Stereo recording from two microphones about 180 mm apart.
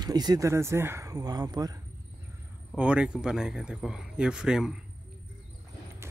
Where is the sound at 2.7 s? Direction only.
5° right (ahead or behind).